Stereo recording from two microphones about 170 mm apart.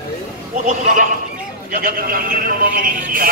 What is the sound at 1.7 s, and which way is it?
Speech, 60° right (ahead or behind).